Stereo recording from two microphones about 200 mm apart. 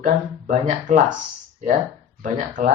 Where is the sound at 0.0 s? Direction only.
40° right (ahead or behind).